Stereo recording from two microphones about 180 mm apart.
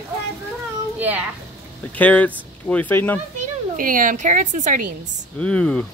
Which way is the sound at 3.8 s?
50° right (ahead or behind).